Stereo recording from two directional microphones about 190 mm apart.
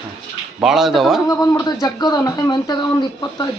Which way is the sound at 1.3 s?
20° left (ahead or behind).